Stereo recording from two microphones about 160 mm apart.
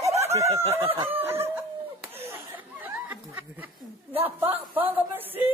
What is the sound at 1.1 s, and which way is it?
Chicken, 15° right (ahead or behind).